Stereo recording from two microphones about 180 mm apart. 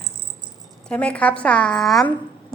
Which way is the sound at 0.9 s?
5° left (ahead or behind).